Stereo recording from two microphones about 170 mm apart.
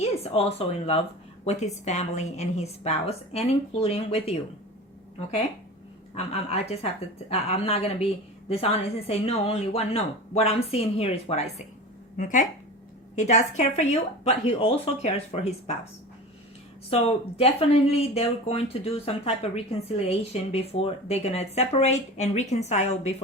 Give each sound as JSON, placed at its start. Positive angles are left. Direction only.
{"t": 0.0, "sound": "a woman's voice", "side_deg": 35}
{"t": 6.1, "sound": "a woman's voice", "side_deg": 35}
{"t": 12.1, "sound": "a woman's voice", "side_deg": 50}
{"t": 16.9, "sound": "a woman's voice", "side_deg": 35}